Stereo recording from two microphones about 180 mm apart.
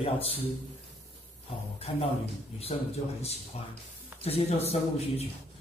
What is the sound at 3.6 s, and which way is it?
A man's voice, 35° left (ahead or behind).